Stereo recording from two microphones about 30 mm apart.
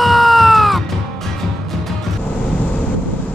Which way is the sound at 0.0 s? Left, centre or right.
Centre.